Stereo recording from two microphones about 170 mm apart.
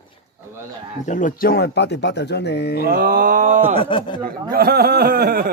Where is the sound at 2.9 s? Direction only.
60° right (ahead or behind).